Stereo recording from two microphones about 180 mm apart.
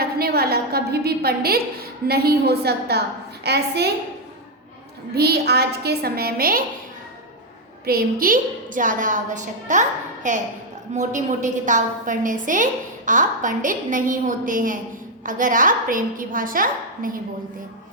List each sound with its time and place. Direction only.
0.0 s a woman's voice: 60° right (ahead or behind)
5.1 s a woman's voice: 65° right (ahead or behind)
7.9 s a woman's voice: 55° right (ahead or behind)